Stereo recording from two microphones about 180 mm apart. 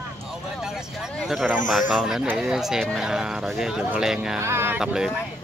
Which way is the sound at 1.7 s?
Centre (ahead or behind).